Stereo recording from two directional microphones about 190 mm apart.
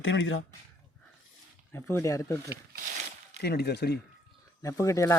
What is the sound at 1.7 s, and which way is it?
Speech, 15° left (ahead or behind).